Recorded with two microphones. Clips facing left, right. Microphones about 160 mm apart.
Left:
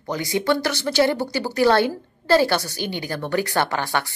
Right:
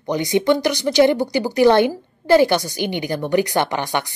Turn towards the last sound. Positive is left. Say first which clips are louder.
# right 2 dB
turn(degrees=-15)  # may be behind; listen again after turning